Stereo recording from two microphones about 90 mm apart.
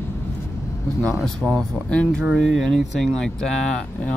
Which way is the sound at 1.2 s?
Centre (ahead or behind).